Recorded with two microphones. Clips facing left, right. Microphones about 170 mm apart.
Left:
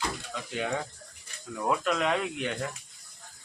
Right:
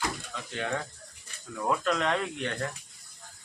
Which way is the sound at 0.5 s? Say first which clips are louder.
Left 1 dB; 10° left (ahead or behind).